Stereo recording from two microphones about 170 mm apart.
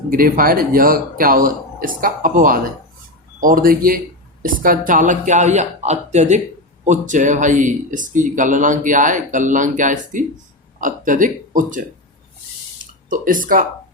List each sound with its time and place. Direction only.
0.1 s speech: 55° right (ahead or behind)
13.1 s speech: 50° right (ahead or behind)